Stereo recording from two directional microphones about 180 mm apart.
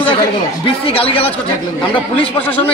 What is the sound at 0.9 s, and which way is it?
Speech, 30° left (ahead or behind).